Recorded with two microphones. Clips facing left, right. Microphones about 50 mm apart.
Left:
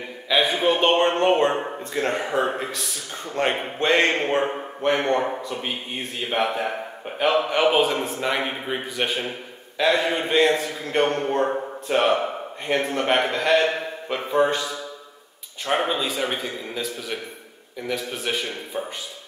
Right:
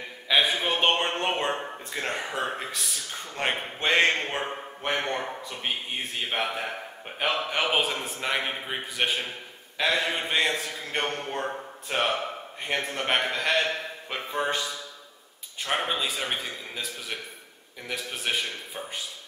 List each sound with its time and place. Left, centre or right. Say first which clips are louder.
0.3 s a sound: left 2 dB; centre
0.6 s a man's voice: left 6 dB; centre
1.5 s speech: left 5 dB; centre
2.0 s a man's voice: left 7 dB; centre
5.5 s a man's voice: left 3 dB; centre